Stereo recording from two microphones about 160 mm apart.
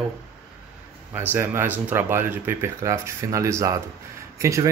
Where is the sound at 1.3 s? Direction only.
15° right (ahead or behind).